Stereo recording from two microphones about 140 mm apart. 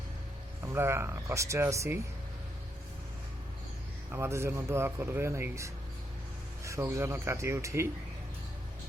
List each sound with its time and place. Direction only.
0.6 s speech: 20° right (ahead or behind)
4.1 s speech: 20° right (ahead or behind)